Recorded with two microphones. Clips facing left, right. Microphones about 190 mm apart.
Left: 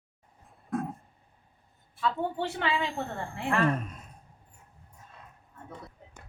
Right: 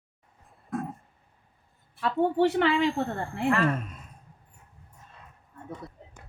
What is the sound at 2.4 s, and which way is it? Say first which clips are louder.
Speech: right 11 dB; 65° right (ahead or behind).